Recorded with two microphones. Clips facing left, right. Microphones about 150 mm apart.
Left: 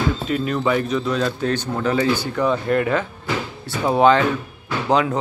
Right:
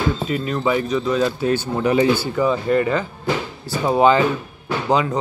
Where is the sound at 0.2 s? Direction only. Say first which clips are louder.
Even; centre (ahead or behind).